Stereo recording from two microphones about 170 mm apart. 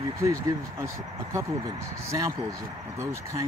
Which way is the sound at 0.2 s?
15° right (ahead or behind).